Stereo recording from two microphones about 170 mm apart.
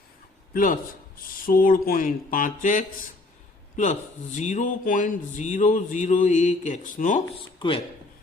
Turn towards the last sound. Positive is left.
turn(degrees=30)  # may be behind; listen again after turning